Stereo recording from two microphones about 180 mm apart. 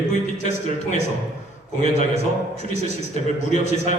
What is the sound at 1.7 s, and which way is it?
A man's voice, 40° left (ahead or behind).